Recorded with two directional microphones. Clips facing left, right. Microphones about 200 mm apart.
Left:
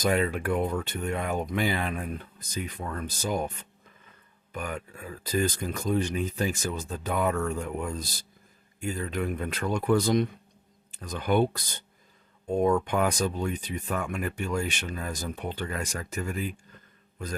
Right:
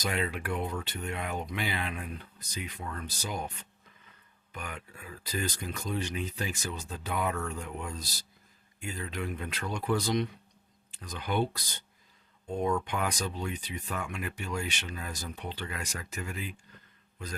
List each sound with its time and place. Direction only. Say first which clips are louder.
0.0 s speech: left 7 dB; 45° left (ahead or behind)
4.5 s speech: left 7 dB; 45° left (ahead or behind)